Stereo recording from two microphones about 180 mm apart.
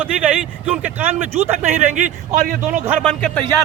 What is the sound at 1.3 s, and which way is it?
A man's voice, 35° right (ahead or behind).